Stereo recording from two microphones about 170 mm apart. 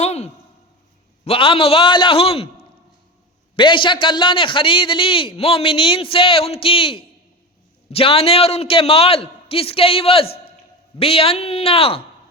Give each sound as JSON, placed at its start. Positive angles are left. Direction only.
{"t": 0.0, "sound": "a sound", "side_deg": 40}
{"t": 1.2, "sound": "a man's voice", "side_deg": 35}
{"t": 3.5, "sound": "a man's voice", "side_deg": 30}